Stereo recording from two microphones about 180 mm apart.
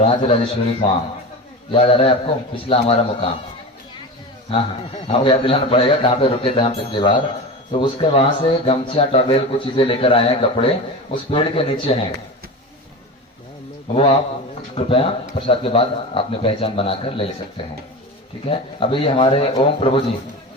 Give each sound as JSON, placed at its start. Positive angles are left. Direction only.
{"t": 0.0, "sound": "speech", "side_deg": 35}
{"t": 1.7, "sound": "speech", "side_deg": 30}
{"t": 4.5, "sound": "speech", "side_deg": 30}
{"t": 13.9, "sound": "speech", "side_deg": 35}
{"t": 18.4, "sound": "speech", "side_deg": 30}